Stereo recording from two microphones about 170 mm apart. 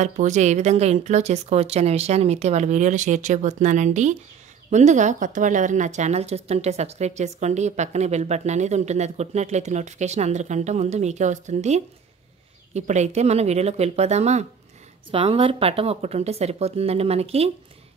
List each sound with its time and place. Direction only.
0.0 s a woman's voice: 45° right (ahead or behind)